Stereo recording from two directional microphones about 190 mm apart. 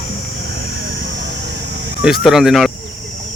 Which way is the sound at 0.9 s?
75° right (ahead or behind).